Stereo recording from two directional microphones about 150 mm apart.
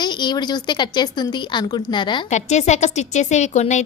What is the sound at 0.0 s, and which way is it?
Speech, 30° left (ahead or behind).